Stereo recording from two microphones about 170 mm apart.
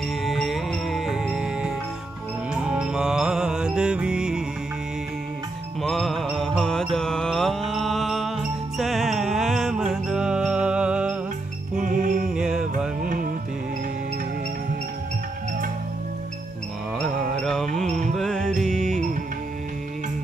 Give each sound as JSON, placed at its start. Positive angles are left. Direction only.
{"t": 0.2, "sound": "music", "side_deg": 0}
{"t": 5.8, "sound": "music", "side_deg": 0}
{"t": 11.7, "sound": "music", "side_deg": -55}
{"t": 12.3, "sound": "music", "side_deg": -5}
{"t": 13.0, "sound": "music", "side_deg": -50}
{"t": 17.0, "sound": "music", "side_deg": 5}